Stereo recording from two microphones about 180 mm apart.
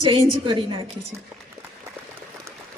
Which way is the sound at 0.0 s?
30° right (ahead or behind).